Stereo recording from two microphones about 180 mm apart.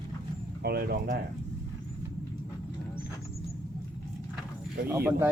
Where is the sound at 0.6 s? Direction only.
60° right (ahead or behind).